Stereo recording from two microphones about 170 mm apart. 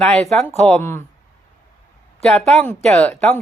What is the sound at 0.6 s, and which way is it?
Speech, 10° left (ahead or behind).